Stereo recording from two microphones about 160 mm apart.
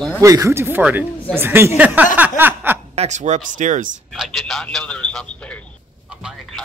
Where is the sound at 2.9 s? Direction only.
45° right (ahead or behind).